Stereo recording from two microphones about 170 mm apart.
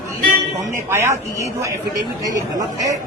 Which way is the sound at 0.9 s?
15° right (ahead or behind).